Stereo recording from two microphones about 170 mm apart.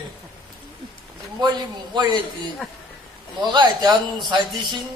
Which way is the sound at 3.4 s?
25° right (ahead or behind).